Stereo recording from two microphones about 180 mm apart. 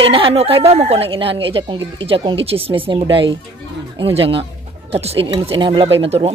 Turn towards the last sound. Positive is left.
turn(degrees=-30)  # may be behind; listen again after turning